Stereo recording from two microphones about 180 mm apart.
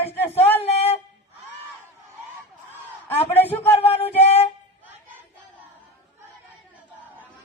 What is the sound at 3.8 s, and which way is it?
Music, 35° left (ahead or behind).